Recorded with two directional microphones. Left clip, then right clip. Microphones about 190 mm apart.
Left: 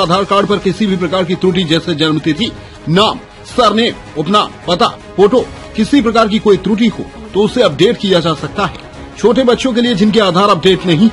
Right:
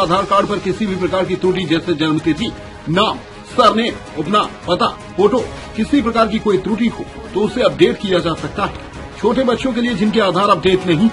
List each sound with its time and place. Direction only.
0.0 s speech: 45° left (ahead or behind)